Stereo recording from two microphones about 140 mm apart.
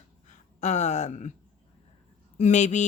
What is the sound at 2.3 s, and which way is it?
Speech, 55° left (ahead or behind).